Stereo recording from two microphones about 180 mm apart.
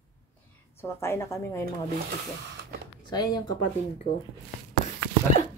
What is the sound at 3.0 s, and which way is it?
Speech, 25° left (ahead or behind).